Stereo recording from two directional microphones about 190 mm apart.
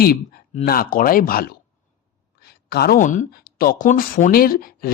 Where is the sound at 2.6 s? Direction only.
55° left (ahead or behind).